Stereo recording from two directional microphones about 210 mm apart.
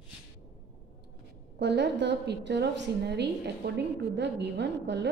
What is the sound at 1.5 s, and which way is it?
A woman's voice, 55° right (ahead or behind).